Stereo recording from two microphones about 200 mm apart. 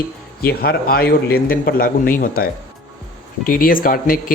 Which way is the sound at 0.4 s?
50° left (ahead or behind).